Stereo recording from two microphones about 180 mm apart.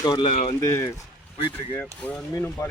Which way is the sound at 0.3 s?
35° left (ahead or behind).